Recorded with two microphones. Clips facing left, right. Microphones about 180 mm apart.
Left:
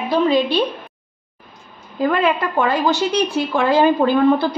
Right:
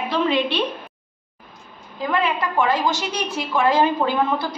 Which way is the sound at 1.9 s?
60° left (ahead or behind).